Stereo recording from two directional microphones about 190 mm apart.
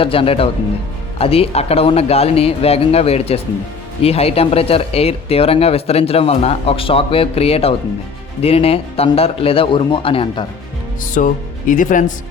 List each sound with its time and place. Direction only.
0.0 s speech: 30° left (ahead or behind)
11.0 s speech: 45° left (ahead or behind)